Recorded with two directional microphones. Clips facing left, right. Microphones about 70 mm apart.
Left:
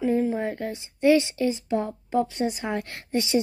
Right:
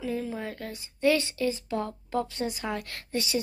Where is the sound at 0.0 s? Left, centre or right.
Left.